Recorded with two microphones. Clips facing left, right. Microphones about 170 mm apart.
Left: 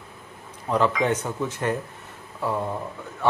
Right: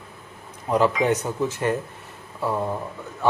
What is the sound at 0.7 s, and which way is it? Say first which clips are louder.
Speech: right 2 dB; 10° right (ahead or behind).